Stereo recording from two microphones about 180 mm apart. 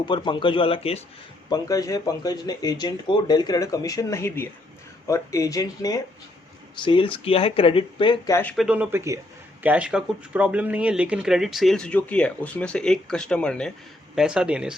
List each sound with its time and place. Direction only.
0.0 s speech: 25° left (ahead or behind)
1.5 s speech: 20° left (ahead or behind)
8.3 s speech: 10° left (ahead or behind)
8.5 s speech: 5° right (ahead or behind)